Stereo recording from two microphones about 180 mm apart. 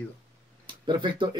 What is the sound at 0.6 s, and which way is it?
Speech, 25° right (ahead or behind).